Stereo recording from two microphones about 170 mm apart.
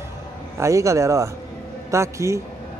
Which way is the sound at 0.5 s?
15° right (ahead or behind).